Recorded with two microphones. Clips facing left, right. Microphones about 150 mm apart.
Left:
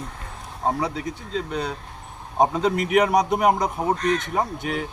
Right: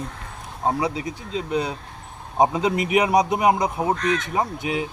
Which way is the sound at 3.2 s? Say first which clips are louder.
Right 1 dB; 15° right (ahead or behind).